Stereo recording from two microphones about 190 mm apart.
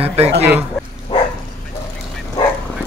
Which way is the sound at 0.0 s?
30° right (ahead or behind).